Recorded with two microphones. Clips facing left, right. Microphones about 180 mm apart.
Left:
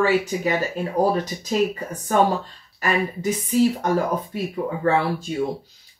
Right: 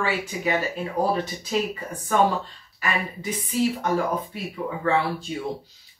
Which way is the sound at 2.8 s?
45° left (ahead or behind).